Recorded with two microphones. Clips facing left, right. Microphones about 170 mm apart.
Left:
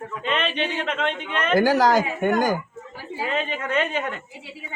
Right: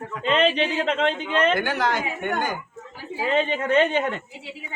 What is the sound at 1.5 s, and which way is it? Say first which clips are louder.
A woman's voice: left 6 dB; 35° left (ahead or behind).